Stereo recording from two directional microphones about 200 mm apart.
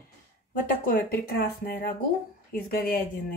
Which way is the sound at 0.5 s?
45° left (ahead or behind).